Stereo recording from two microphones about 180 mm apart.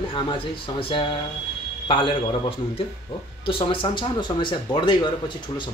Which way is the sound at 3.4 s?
30° left (ahead or behind).